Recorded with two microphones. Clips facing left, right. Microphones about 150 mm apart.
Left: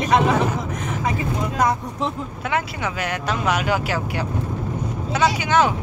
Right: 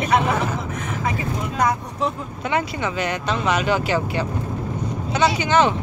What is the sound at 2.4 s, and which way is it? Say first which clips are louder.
Speech: right 2 dB; 5° left (ahead or behind).